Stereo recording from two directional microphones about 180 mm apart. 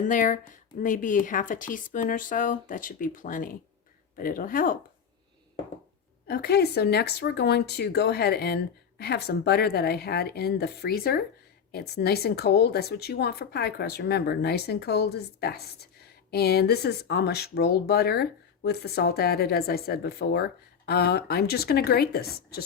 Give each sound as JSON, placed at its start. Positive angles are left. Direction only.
{"t": 0.0, "sound": "speech", "side_deg": 45}
{"t": 6.2, "sound": "speech", "side_deg": 60}